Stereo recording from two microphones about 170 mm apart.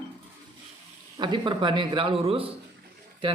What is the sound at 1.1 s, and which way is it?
Speech, 25° right (ahead or behind).